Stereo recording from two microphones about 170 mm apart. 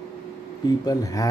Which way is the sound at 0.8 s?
20° left (ahead or behind).